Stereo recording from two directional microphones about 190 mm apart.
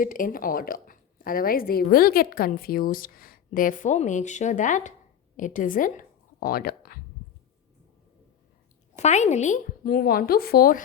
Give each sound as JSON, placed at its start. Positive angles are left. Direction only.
{"t": 0.0, "sound": "a woman's voice", "side_deg": 45}
{"t": 9.0, "sound": "a woman's voice", "side_deg": 35}